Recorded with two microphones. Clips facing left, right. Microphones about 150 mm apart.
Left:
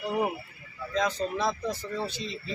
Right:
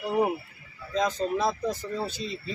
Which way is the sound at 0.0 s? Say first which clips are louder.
Right 3 dB; 10° right (ahead or behind).